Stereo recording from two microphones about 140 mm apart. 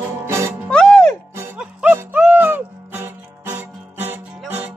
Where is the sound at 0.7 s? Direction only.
5° left (ahead or behind).